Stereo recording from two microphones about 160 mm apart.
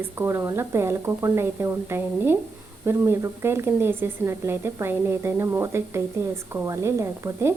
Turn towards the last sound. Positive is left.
turn(degrees=-20)  # may be behind; listen again after turning